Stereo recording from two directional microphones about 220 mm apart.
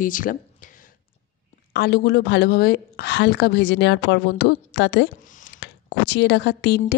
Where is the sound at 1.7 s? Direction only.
50° left (ahead or behind).